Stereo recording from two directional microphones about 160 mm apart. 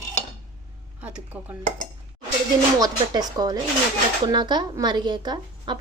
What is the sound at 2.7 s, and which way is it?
A woman's voice, 25° right (ahead or behind).